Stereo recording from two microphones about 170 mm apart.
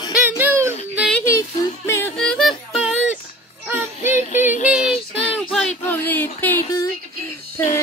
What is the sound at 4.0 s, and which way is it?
Music, 45° left (ahead or behind).